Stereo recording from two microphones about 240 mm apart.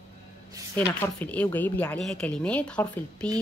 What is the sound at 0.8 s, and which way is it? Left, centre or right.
A woman's voice, centre.